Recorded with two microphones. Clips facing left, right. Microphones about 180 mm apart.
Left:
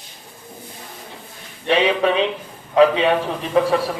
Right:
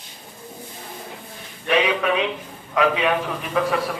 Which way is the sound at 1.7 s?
30° left (ahead or behind).